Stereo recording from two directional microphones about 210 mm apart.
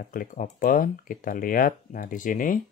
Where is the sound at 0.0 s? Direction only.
40° left (ahead or behind).